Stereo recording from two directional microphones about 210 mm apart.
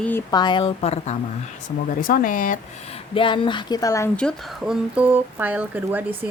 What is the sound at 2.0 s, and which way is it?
Speech, 40° left (ahead or behind).